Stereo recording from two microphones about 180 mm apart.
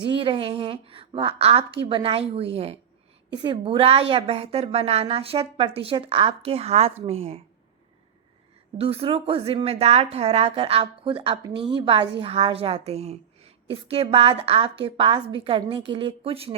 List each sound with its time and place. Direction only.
0.1 s a woman's voice: 30° right (ahead or behind)
8.8 s a woman's voice: 30° right (ahead or behind)